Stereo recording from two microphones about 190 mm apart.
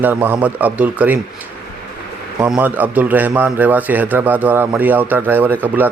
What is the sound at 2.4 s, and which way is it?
A man's voice, 10° right (ahead or behind).